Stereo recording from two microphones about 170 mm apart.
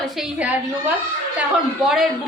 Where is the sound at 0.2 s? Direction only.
5° right (ahead or behind).